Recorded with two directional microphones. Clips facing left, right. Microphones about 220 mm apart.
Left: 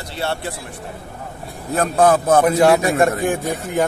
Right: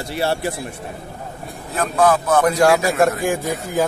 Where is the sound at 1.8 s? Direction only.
45° left (ahead or behind).